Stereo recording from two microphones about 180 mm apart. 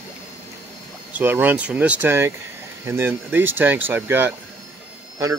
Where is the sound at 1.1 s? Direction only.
10° right (ahead or behind).